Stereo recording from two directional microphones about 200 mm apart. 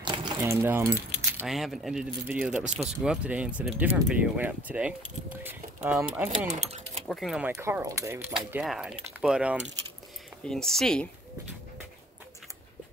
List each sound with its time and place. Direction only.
0.0 s a sound: 25° right (ahead or behind)
0.4 s speech: 10° right (ahead or behind)
1.4 s speech: centre (ahead or behind)
7.5 s speech: 15° right (ahead or behind); by 11.1 s centre (ahead or behind)